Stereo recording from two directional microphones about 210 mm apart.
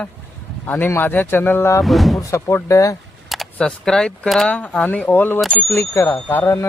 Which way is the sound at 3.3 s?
Centre (ahead or behind).